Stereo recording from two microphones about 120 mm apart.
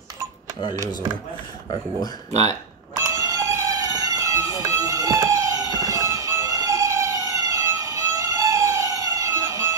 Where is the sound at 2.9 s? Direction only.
30° right (ahead or behind).